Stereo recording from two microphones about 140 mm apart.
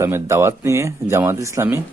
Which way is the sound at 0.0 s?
20° right (ahead or behind).